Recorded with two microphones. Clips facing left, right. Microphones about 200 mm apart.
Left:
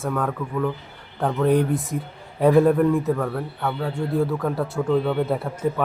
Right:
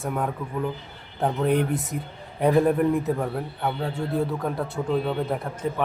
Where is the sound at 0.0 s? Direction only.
15° right (ahead or behind).